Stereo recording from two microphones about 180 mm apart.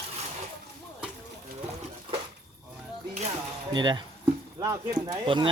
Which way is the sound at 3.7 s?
25° right (ahead or behind).